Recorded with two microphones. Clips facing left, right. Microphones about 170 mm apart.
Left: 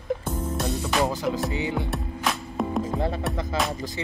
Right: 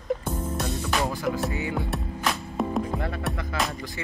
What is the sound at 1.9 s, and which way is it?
Music, centre (ahead or behind).